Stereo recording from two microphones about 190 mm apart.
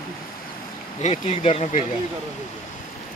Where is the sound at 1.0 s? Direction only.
35° left (ahead or behind).